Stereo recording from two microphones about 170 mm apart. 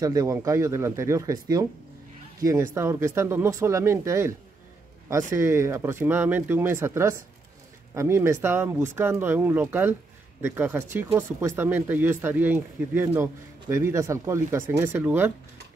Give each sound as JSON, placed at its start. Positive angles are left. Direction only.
{"t": 0.0, "sound": "speech", "side_deg": -20}